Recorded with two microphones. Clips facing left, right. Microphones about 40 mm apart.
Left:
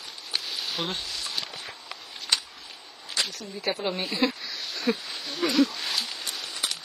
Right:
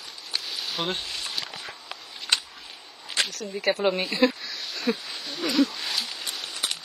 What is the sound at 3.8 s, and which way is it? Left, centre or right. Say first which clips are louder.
Speech: right 5 dB; right.